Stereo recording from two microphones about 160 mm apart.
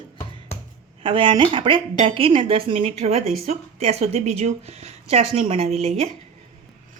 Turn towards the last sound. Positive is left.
turn(degrees=-40)  # may be behind; listen again after turning